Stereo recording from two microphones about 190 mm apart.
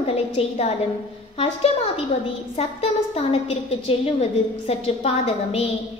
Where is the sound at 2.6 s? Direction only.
35° left (ahead or behind).